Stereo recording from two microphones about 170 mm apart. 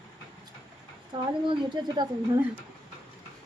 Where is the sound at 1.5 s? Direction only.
25° right (ahead or behind).